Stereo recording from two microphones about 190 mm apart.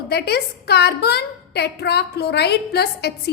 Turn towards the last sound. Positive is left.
turn(degrees=60)  # may be behind; listen again after turning